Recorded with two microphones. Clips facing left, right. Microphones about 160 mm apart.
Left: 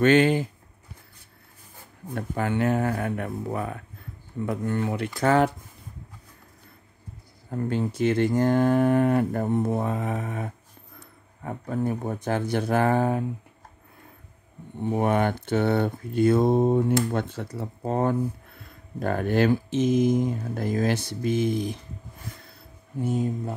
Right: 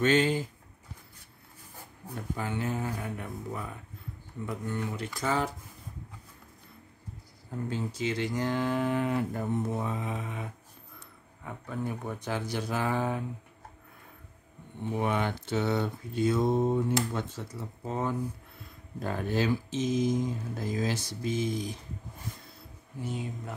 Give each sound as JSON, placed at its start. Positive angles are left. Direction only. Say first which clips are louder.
{"t": 0.0, "sound": "speech", "louder": "left 6 dB", "side_deg": 60}
{"t": 2.1, "sound": "speech", "louder": "left 8 dB", "side_deg": 65}
{"t": 7.5, "sound": "speech", "louder": "left 7 dB", "side_deg": 60}
{"t": 14.8, "sound": "speech", "louder": "left 6 dB", "side_deg": 50}
{"t": 22.9, "sound": "speech", "louder": "left 10 dB", "side_deg": 45}